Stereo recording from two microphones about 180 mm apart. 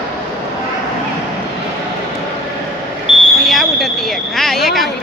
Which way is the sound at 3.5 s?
Centre (ahead or behind).